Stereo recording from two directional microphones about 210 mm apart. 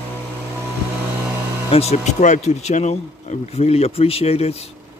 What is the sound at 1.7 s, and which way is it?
Speech, 30° left (ahead or behind).